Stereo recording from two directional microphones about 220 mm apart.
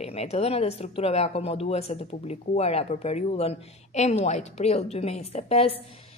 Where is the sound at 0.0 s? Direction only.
30° left (ahead or behind).